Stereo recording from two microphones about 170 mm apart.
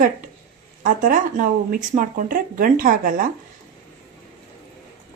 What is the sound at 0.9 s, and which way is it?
Speech, 50° right (ahead or behind).